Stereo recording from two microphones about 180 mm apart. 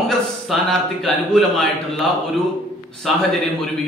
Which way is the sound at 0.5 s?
Centre (ahead or behind).